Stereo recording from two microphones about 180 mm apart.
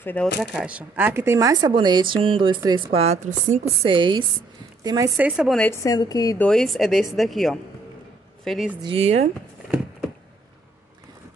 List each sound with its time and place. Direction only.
0.0 s speech: 10° left (ahead or behind)
0.4 s speech: 5° right (ahead or behind); by 3.6 s 45° right (ahead or behind)
3.8 s speech: 25° right (ahead or behind)
5.1 s speech: 5° right (ahead or behind)
5.6 s speech: 15° left (ahead or behind)
6.4 s speech: centre (ahead or behind)
8.8 s speech: 35° right (ahead or behind)